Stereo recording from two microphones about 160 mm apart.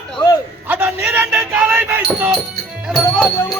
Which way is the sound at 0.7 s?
10° right (ahead or behind).